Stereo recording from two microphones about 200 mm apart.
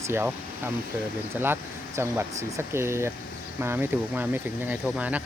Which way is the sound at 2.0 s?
10° right (ahead or behind).